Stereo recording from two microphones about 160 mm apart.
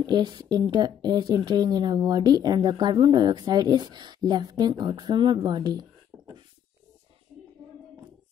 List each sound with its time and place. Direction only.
0.0 s speech: 25° right (ahead or behind)